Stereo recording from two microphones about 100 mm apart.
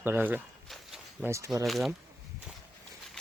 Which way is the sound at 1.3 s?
30° right (ahead or behind).